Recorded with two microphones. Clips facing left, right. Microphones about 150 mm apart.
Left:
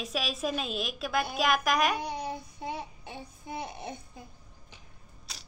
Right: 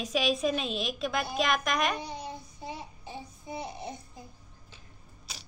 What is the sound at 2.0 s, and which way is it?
Child singing, 65° left (ahead or behind).